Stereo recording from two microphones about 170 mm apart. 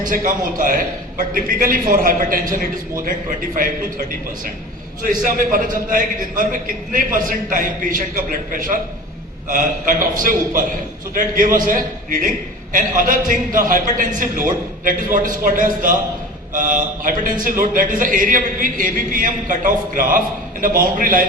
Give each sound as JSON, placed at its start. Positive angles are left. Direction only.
{"t": 0.1, "sound": "a man's voice", "side_deg": -55}
{"t": 5.0, "sound": "speech", "side_deg": -55}